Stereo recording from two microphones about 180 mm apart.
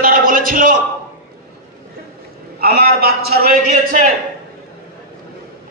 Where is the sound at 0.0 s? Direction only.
50° right (ahead or behind).